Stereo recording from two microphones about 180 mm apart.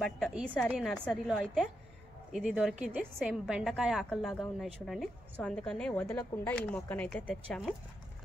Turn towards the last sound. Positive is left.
turn(degrees=5)  # may be behind; listen again after turning